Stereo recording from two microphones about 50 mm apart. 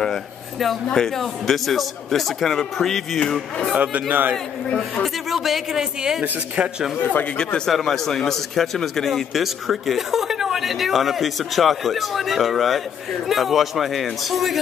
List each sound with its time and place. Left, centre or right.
0.0 s speech: centre
3.7 s a man's voice: right
4.1 s a man's voice: right
5.0 s speech: centre
7.3 s speech: centre
7.7 s speech: centre